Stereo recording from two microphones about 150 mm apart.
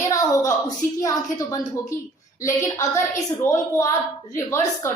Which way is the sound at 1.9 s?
20° left (ahead or behind).